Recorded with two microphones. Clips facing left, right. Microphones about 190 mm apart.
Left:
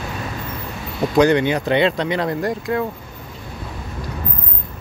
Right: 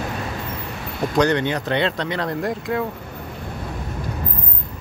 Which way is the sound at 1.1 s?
10° left (ahead or behind).